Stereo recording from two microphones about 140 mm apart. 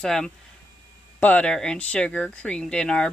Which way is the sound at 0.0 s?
5° left (ahead or behind).